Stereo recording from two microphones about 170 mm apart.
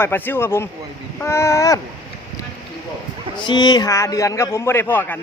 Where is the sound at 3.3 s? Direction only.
25° left (ahead or behind); by 5.2 s 10° left (ahead or behind).